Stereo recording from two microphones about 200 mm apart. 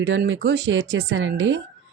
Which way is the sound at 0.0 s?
65° right (ahead or behind).